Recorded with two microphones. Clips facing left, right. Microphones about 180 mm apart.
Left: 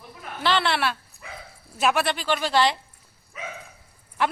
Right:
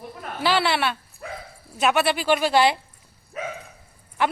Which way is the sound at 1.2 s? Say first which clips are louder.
Right 7 dB; 45° right (ahead or behind).